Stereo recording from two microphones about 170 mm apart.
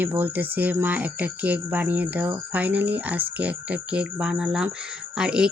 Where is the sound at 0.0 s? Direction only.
10° right (ahead or behind).